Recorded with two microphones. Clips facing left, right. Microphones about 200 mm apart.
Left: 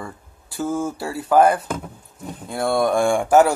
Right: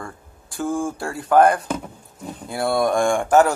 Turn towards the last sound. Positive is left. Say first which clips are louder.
# left 1 dB
turn(degrees=10)  # may be behind; listen again after turning